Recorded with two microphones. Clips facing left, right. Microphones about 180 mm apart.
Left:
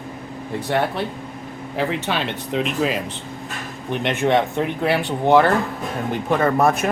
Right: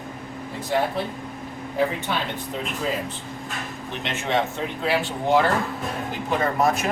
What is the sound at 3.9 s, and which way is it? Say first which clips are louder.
Speech: left 7 dB; 60° left (ahead or behind).